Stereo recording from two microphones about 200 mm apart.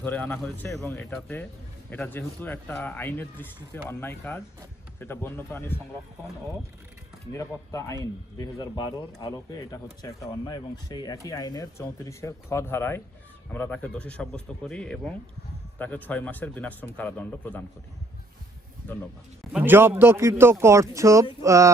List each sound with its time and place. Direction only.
0.0 s speech: 10° left (ahead or behind)
7.3 s speech: 15° left (ahead or behind)
19.5 s speech: 10° right (ahead or behind)